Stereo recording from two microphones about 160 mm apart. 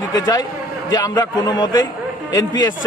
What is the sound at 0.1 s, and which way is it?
A man's voice, 25° left (ahead or behind).